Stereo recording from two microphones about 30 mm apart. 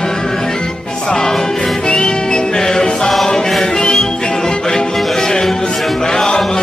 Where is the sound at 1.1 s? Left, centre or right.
Centre.